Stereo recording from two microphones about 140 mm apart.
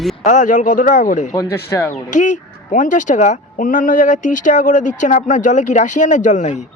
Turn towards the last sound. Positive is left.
turn(degrees=60)  # may be behind; listen again after turning